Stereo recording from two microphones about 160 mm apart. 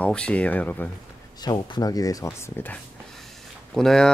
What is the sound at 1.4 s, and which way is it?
Speech, 25° left (ahead or behind).